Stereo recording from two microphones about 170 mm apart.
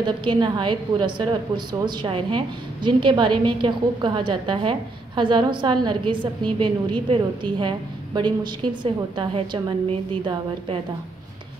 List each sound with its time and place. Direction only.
0.0 s a woman's voice: 25° right (ahead or behind)